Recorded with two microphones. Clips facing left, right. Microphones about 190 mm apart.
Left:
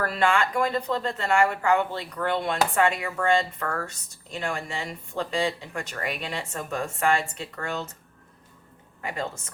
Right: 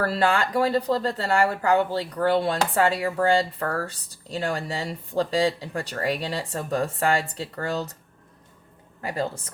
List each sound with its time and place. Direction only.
0.0 s speech: 35° right (ahead or behind)
9.0 s speech: 35° right (ahead or behind)